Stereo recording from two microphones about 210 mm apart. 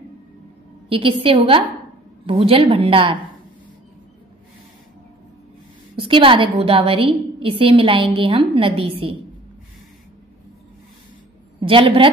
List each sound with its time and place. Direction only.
0.8 s a woman's voice: 25° right (ahead or behind)
5.9 s a woman's voice: 25° right (ahead or behind)
11.6 s a woman's voice: 25° right (ahead or behind)